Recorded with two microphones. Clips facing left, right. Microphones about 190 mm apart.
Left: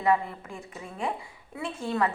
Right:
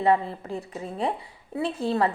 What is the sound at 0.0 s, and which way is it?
A woman's voice, 30° right (ahead or behind).